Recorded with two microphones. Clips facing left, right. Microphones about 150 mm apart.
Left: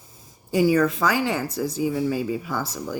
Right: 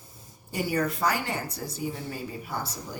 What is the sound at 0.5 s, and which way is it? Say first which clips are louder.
Speech: left 9 dB; 90° left.